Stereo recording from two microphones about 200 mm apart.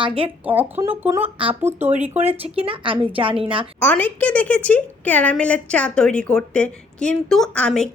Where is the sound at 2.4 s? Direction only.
30° right (ahead or behind).